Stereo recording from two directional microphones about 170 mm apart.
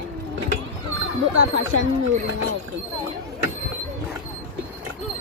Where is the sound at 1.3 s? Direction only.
90° right.